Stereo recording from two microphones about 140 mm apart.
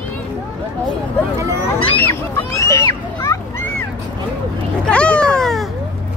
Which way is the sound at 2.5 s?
20° left (ahead or behind).